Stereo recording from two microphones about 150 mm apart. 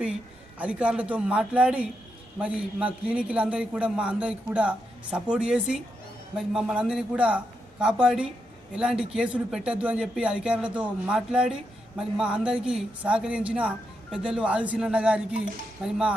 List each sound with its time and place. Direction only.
0.6 s a man's voice: 5° right (ahead or behind)